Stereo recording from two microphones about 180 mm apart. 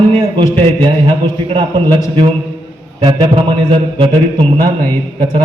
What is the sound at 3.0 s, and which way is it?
A man's voice, 25° right (ahead or behind).